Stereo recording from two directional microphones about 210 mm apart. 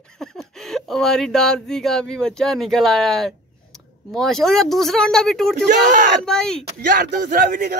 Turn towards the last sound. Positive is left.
turn(degrees=-40)  # may be behind; listen again after turning